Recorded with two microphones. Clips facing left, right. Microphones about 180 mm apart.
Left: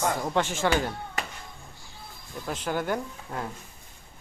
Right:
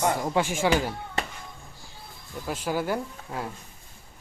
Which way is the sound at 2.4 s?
5° right (ahead or behind).